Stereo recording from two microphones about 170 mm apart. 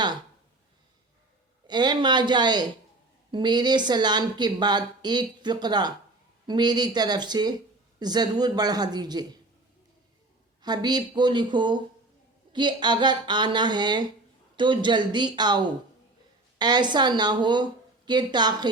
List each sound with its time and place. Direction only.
1.6 s speech: 25° right (ahead or behind)
10.6 s speech: 25° right (ahead or behind)